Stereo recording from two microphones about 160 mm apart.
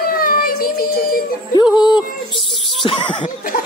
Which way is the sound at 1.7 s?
5° right (ahead or behind).